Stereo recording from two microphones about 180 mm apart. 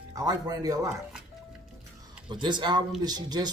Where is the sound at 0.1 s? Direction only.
20° right (ahead or behind).